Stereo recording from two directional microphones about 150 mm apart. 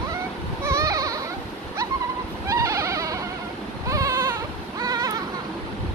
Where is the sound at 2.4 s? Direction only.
20° right (ahead or behind).